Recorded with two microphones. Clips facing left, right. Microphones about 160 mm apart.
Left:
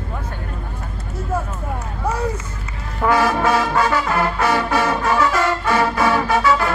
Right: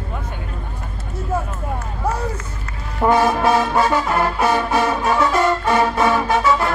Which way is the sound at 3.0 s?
20° right (ahead or behind).